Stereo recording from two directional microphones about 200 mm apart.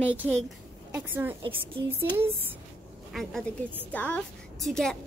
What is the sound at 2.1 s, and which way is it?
Speech, 30° right (ahead or behind).